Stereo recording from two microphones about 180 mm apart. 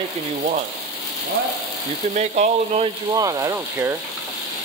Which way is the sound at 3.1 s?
20° right (ahead or behind).